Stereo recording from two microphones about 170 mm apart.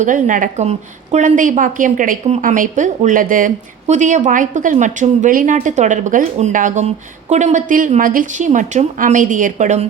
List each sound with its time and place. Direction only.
0.3 s a woman's voice: 50° right (ahead or behind)